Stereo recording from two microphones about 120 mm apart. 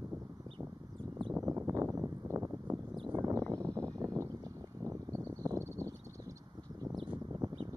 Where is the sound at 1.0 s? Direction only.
45° right (ahead or behind).